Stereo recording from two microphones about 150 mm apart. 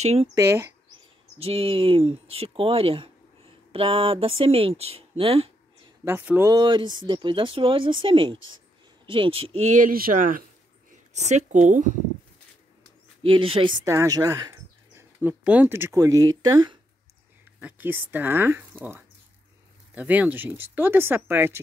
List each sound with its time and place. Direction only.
0.0 s speech: 45° right (ahead or behind)
0.3 s speech: 20° right (ahead or behind)
1.4 s speech: 40° right (ahead or behind)
6.0 s speech: 15° right (ahead or behind)
6.5 s speech: 30° right (ahead or behind)
9.7 s speech: 65° right (ahead or behind)
11.2 s speech: 50° right (ahead or behind)
13.2 s speech: 35° right (ahead or behind)
13.8 s speech: 20° right (ahead or behind)
17.6 s speech: 10° right (ahead or behind)